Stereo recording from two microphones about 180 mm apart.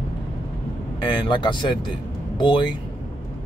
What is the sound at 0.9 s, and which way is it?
Speech, 25° left (ahead or behind).